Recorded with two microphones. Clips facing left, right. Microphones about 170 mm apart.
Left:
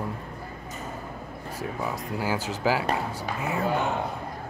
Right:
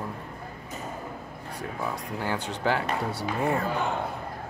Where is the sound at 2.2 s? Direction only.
5° left (ahead or behind).